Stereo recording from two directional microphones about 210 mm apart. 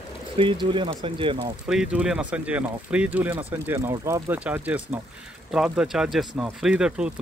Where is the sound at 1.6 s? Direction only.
5° right (ahead or behind).